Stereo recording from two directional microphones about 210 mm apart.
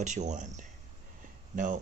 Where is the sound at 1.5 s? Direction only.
40° right (ahead or behind).